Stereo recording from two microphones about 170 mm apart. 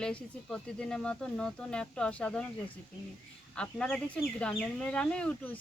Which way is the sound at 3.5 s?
5° left (ahead or behind).